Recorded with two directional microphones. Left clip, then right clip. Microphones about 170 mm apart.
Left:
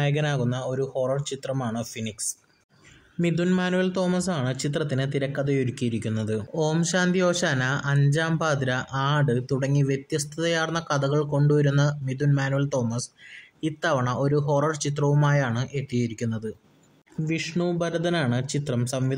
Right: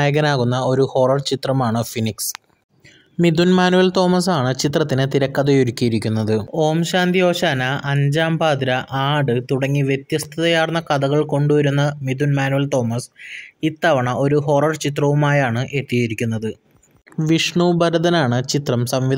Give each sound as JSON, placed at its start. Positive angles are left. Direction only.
{"t": 0.0, "sound": "speech", "side_deg": -50}
{"t": 3.2, "sound": "speech", "side_deg": -50}
{"t": 6.5, "sound": "speech", "side_deg": -20}
{"t": 17.2, "sound": "speech", "side_deg": -50}